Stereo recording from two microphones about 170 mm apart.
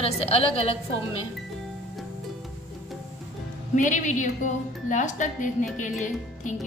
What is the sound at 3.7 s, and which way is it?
A woman's voice, 45° left (ahead or behind).